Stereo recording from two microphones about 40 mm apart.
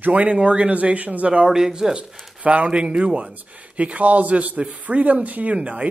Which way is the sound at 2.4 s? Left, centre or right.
Right.